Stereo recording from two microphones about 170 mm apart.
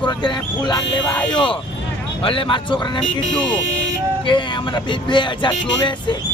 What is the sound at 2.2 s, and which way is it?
Speech, 30° left (ahead or behind).